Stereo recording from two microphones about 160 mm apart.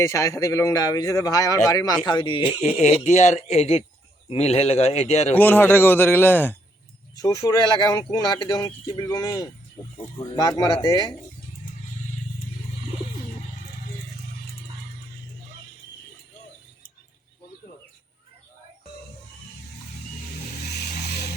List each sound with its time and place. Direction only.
0.0 s speech: 20° left (ahead or behind); by 5.3 s 40° left (ahead or behind)
5.4 s a man's voice: 10° left (ahead or behind)
7.2 s speech: 25° left (ahead or behind)
20.7 s vehicle: 90° left